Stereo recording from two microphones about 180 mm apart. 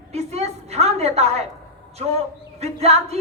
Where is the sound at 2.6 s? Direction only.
35° right (ahead or behind).